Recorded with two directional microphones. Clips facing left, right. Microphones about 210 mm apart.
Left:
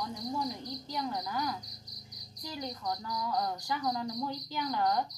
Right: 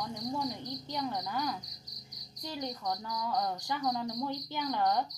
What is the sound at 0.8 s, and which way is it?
Cricket, 25° right (ahead or behind).